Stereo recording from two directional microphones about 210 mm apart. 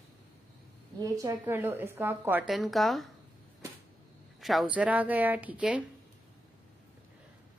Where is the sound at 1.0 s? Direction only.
15° right (ahead or behind); by 3.0 s centre (ahead or behind).